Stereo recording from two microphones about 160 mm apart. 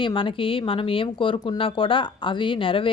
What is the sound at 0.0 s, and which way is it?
Speech, 30° left (ahead or behind).